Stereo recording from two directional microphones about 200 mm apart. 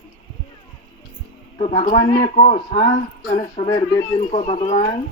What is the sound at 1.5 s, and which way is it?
A man's voice, 30° left (ahead or behind).